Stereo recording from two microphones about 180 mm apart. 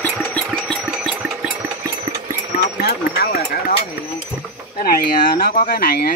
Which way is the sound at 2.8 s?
60° left (ahead or behind).